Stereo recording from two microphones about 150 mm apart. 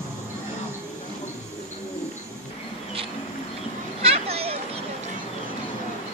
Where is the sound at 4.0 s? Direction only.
40° right (ahead or behind).